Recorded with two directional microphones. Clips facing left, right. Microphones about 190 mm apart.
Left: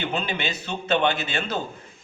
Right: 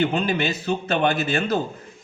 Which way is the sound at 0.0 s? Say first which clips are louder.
Right 6 dB; 50° right (ahead or behind).